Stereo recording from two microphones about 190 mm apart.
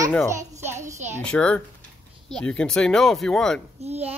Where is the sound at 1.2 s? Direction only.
5° left (ahead or behind).